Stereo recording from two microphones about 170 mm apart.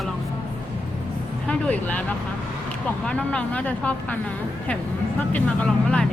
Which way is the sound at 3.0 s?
5° left (ahead or behind).